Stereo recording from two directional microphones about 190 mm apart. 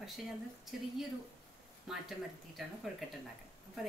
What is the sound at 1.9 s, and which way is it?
Speech, centre (ahead or behind).